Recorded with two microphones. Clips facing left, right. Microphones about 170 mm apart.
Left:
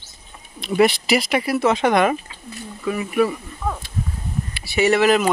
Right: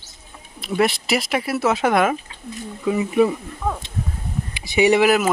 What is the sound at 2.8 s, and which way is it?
Speech, 20° right (ahead or behind).